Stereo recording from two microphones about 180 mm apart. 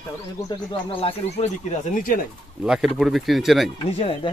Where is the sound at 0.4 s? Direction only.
30° left (ahead or behind); by 2.2 s 50° left (ahead or behind).